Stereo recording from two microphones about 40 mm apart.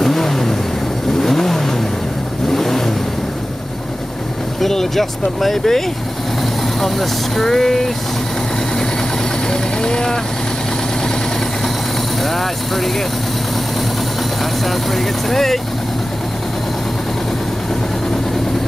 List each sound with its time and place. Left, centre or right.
0.0 s vehicle: centre
4.6 s speech: centre
9.5 s vehicle: centre
12.2 s vehicle: centre
14.4 s speech: centre